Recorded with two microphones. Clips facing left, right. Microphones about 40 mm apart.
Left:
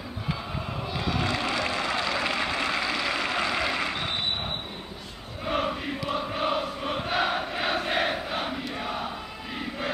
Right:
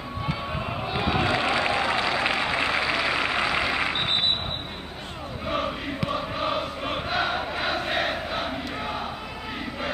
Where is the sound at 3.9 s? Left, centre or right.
Right.